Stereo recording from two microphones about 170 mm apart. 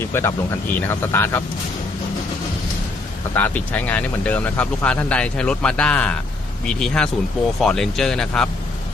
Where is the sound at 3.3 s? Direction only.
10° left (ahead or behind).